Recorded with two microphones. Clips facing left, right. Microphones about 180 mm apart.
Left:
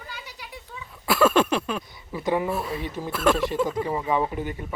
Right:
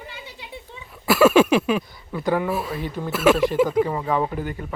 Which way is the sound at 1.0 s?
5° right (ahead or behind).